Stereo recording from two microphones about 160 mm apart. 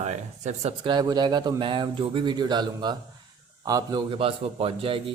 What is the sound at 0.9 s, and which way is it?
Speech, 25° right (ahead or behind).